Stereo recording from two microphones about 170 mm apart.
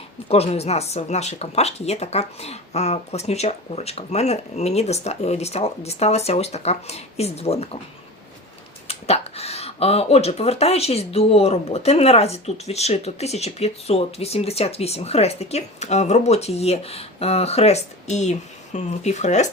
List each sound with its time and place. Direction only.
0.3 s speech: 35° left (ahead or behind)
8.9 s speech: 35° left (ahead or behind)